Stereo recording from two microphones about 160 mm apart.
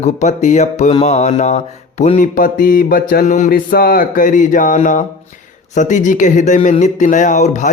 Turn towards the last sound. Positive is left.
turn(degrees=50)  # may be behind; listen again after turning